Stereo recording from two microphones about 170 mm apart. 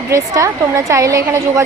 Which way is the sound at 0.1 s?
15° right (ahead or behind).